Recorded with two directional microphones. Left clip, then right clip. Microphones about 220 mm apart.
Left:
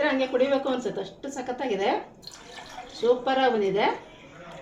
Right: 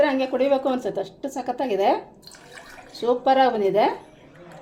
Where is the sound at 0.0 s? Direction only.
55° right (ahead or behind).